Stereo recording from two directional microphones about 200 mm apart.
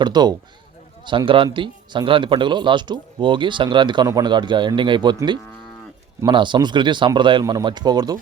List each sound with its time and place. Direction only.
0.0 s speech: 20° right (ahead or behind)